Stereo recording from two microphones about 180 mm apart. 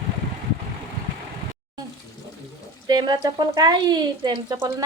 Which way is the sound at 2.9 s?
25° right (ahead or behind).